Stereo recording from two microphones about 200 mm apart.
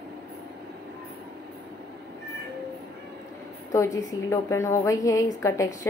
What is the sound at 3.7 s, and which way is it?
A woman's voice, 15° left (ahead or behind).